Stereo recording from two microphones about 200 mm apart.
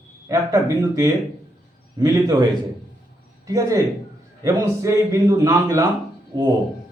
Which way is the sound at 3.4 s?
15° right (ahead or behind).